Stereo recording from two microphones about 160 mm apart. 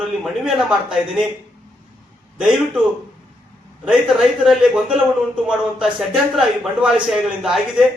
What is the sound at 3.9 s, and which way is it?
A man's voice, centre (ahead or behind).